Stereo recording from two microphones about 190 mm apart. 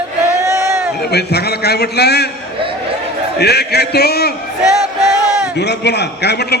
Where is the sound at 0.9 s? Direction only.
60° left (ahead or behind).